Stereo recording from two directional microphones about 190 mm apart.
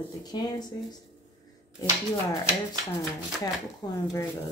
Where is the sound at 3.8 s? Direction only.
20° left (ahead or behind).